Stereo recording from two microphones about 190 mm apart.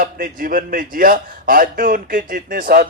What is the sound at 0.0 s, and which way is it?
A man's voice, 50° right (ahead or behind).